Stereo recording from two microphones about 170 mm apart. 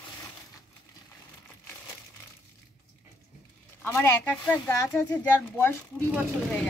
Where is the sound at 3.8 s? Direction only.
15° left (ahead or behind).